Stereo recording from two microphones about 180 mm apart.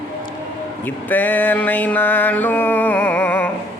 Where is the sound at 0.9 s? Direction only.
10° left (ahead or behind).